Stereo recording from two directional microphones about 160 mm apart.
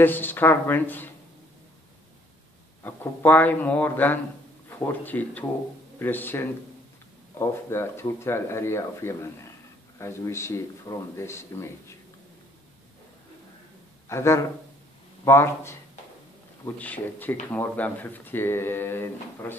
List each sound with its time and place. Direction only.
0.0 s speech: 10° left (ahead or behind)
2.8 s speech: 15° left (ahead or behind)
14.0 s speech: 15° left (ahead or behind)